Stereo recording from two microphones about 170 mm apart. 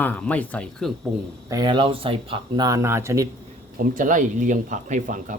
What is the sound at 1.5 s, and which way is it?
Speech, 25° right (ahead or behind).